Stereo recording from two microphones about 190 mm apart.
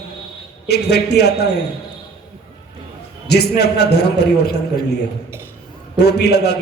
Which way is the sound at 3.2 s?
60° left (ahead or behind).